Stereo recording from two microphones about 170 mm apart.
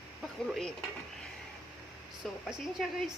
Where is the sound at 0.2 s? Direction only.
Centre (ahead or behind).